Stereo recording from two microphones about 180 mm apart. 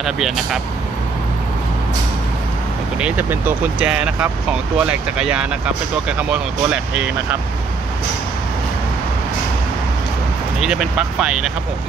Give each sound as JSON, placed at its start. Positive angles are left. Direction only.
{"t": 0.0, "sound": "speech", "side_deg": 0}
{"t": 3.0, "sound": "speech", "side_deg": -10}
{"t": 10.6, "sound": "speech", "side_deg": -5}